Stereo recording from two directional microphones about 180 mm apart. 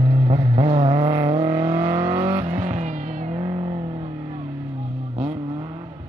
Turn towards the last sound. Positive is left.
turn(degrees=-15)  # may be behind; listen again after turning